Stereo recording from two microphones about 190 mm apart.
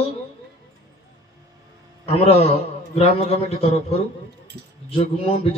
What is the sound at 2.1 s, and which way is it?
A man's voice, 30° left (ahead or behind).